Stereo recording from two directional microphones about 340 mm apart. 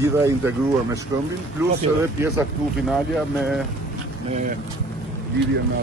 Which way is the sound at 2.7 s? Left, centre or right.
Centre.